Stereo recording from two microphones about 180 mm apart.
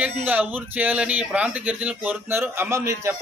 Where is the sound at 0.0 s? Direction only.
10° right (ahead or behind).